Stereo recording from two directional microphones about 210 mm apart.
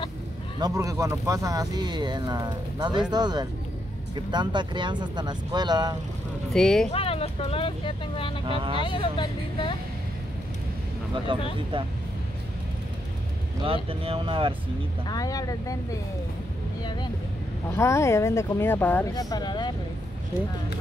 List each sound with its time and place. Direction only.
0.6 s speech: 15° right (ahead or behind)
6.5 s speech: centre (ahead or behind)
6.9 s speech: 25° left (ahead or behind)
8.5 s speech: 25° right (ahead or behind)
8.8 s speech: 25° left (ahead or behind)
11.3 s speech: 25° right (ahead or behind)
13.8 s speech: 25° right (ahead or behind)
15.0 s speech: 15° left (ahead or behind)
17.7 s speech: 15° left (ahead or behind)